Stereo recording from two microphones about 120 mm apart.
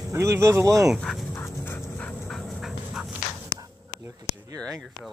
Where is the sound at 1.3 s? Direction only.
20° left (ahead or behind).